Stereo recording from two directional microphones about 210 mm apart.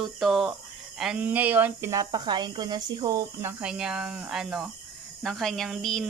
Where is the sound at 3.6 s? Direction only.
5° right (ahead or behind).